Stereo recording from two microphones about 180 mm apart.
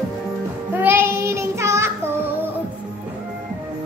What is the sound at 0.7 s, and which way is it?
Child singing, 10° right (ahead or behind).